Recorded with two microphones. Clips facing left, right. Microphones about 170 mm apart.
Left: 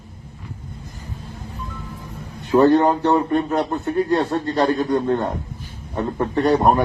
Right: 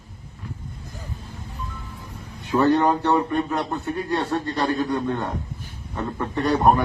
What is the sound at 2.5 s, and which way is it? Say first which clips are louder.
A man's voice: left 4 dB; 45° left (ahead or behind).